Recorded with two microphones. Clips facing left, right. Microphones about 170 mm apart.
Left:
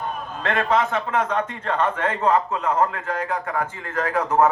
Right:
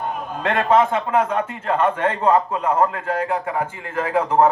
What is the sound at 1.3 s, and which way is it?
Speech, 10° right (ahead or behind).